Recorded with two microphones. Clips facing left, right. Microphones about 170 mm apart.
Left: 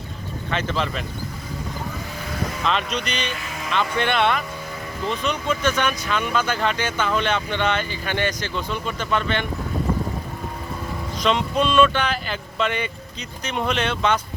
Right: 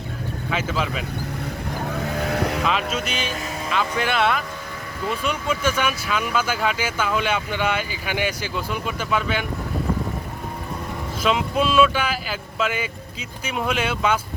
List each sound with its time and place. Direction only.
0.5 s speech: 5° right (ahead or behind)
1.9 s vehicle: 65° right (ahead or behind)
2.6 s speech: 5° right (ahead or behind)
11.2 s speech: 5° right (ahead or behind)